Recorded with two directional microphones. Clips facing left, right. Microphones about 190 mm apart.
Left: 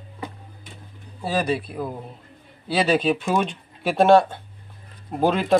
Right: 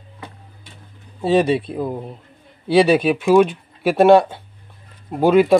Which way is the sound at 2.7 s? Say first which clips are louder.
Right 6 dB; 15° right (ahead or behind).